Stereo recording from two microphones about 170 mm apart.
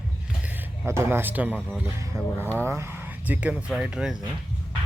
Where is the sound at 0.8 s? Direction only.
15° right (ahead or behind).